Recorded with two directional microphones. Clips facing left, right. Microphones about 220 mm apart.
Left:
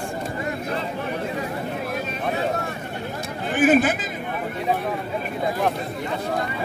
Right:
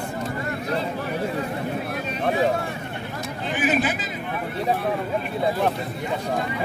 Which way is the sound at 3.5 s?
50° left (ahead or behind).